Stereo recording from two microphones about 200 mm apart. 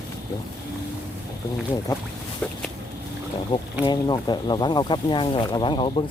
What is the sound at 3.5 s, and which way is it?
Speech, 25° left (ahead or behind).